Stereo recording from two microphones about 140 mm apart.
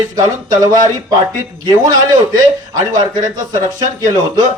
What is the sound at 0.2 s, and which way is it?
Speech, 30° right (ahead or behind).